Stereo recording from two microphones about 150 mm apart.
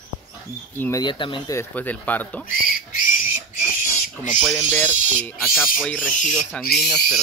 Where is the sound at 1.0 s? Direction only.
30° left (ahead or behind).